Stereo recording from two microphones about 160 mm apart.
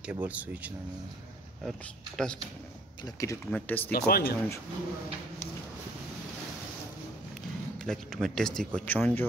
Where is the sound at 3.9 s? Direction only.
75° left (ahead or behind).